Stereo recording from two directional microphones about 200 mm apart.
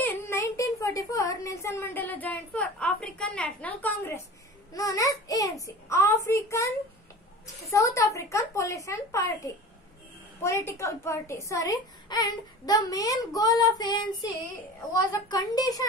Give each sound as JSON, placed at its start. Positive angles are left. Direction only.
{"t": 0.0, "sound": "a woman's voice", "side_deg": 10}
{"t": 7.7, "sound": "a woman's voice", "side_deg": 15}